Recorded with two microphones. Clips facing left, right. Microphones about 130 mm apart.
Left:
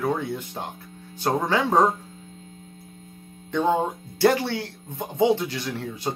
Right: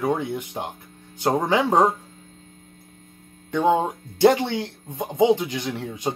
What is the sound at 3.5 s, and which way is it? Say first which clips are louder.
Speech: right 2 dB; 15° right (ahead or behind).